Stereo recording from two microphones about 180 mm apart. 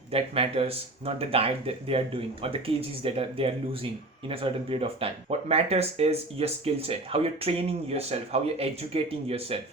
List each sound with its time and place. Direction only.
0.1 s speech: 30° right (ahead or behind)